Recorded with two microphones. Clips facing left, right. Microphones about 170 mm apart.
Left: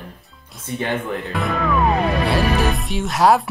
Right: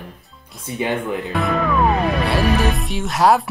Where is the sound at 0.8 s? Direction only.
15° right (ahead or behind).